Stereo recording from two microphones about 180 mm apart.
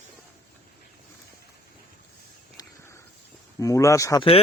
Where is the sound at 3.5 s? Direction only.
20° left (ahead or behind).